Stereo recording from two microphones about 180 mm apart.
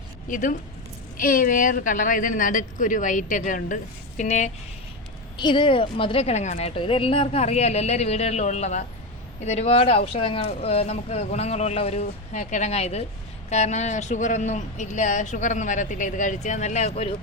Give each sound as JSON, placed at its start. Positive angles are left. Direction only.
{"t": 0.3, "sound": "a woman's voice", "side_deg": 50}
{"t": 5.4, "sound": "speech", "side_deg": 25}